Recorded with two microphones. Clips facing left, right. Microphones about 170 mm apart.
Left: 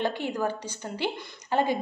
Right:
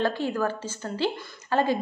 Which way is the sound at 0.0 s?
15° left (ahead or behind).